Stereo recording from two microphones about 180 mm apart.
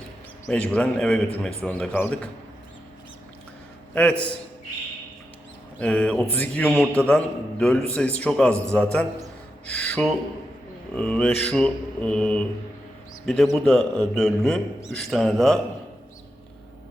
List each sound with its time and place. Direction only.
0.5 s mantra: 5° left (ahead or behind)
3.9 s a man's voice: 5° left (ahead or behind)
5.8 s mantra: 5° left (ahead or behind)
9.6 s speech: 5° left (ahead or behind)
10.9 s mantra: 5° left (ahead or behind)